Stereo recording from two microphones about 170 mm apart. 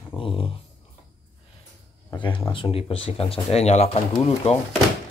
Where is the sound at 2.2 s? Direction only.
30° left (ahead or behind).